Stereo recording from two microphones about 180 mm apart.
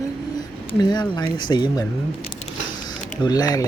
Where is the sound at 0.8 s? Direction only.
25° left (ahead or behind).